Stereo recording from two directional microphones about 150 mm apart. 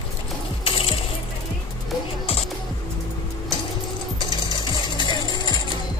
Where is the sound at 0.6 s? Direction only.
40° left (ahead or behind).